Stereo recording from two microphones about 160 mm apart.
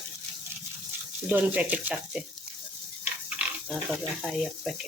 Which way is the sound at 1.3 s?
10° right (ahead or behind).